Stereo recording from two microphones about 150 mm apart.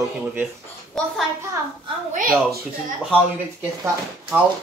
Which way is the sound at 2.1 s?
65° right (ahead or behind).